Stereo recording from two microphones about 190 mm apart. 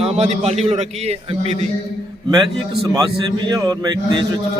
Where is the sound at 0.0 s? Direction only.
35° right (ahead or behind).